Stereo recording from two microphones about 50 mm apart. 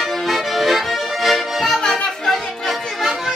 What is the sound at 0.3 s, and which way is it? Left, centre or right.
Accordion, centre.